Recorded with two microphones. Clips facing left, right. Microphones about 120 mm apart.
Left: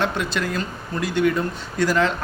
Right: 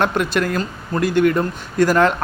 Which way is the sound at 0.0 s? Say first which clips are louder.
Right 5 dB; 55° right (ahead or behind).